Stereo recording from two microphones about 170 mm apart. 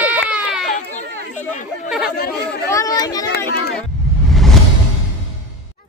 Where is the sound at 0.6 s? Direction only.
45° left (ahead or behind).